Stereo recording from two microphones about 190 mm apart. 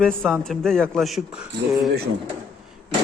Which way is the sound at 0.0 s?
5° left (ahead or behind).